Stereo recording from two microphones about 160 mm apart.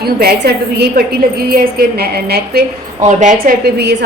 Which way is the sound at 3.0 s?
50° right (ahead or behind).